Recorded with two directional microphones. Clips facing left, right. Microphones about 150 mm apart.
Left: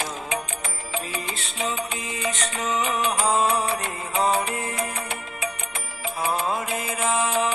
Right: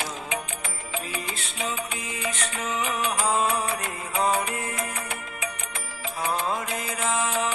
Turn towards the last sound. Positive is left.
turn(degrees=15)  # may be behind; listen again after turning